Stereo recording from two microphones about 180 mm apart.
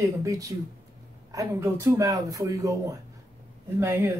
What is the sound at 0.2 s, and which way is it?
Speech, 20° right (ahead or behind).